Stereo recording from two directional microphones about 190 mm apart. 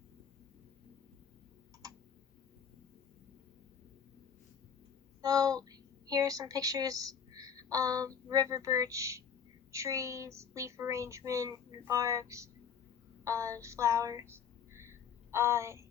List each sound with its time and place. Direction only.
5.2 s a woman's voice: 20° right (ahead or behind)